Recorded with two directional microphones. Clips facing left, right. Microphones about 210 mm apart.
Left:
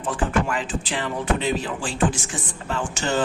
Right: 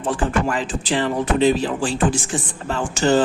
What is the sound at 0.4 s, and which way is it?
Speech, 35° right (ahead or behind).